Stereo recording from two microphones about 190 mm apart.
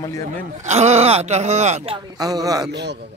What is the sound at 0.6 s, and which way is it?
A man's voice, 35° right (ahead or behind).